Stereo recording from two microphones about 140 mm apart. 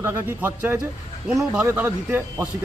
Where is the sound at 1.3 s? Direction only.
5° right (ahead or behind).